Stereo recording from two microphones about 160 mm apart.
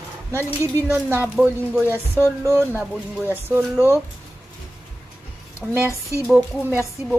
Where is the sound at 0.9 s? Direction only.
10° right (ahead or behind).